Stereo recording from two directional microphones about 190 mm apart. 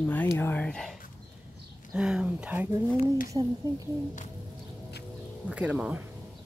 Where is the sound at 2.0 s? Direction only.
5° right (ahead or behind).